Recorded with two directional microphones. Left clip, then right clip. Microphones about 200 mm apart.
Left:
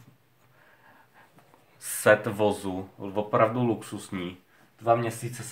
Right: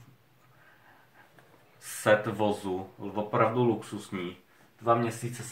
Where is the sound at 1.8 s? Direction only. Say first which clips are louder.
Left 3 dB; 45° left (ahead or behind).